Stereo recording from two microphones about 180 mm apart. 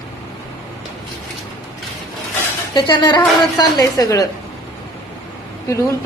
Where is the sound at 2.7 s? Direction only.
25° left (ahead or behind).